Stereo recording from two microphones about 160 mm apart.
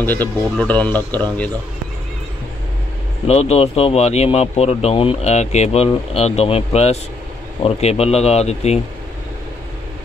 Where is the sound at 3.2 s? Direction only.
40° left (ahead or behind).